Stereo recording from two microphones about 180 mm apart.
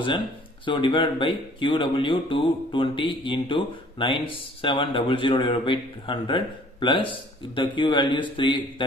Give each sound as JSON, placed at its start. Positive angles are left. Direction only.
{"t": 0.7, "sound": "speech", "side_deg": 25}